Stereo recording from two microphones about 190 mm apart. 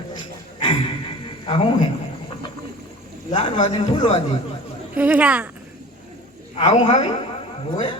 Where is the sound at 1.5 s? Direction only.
30° left (ahead or behind).